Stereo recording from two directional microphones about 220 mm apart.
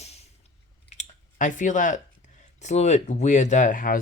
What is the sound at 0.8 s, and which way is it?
Chewing, 35° left (ahead or behind).